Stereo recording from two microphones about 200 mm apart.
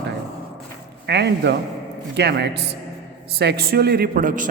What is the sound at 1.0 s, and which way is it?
A woman's voice, 55° right (ahead or behind).